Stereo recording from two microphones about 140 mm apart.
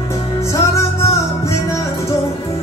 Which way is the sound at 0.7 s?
20° left (ahead or behind).